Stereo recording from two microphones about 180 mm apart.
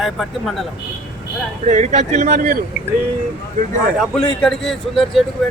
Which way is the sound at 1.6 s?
40° right (ahead or behind).